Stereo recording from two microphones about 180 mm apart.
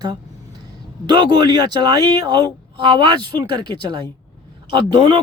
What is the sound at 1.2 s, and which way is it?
Speech, 25° right (ahead or behind).